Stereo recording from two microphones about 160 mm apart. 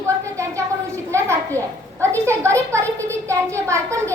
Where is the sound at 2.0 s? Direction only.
15° right (ahead or behind).